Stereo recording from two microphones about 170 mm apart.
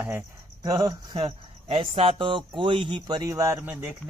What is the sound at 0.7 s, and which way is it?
Speech, 25° right (ahead or behind).